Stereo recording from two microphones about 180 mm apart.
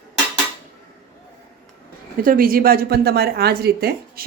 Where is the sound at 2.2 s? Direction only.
50° right (ahead or behind).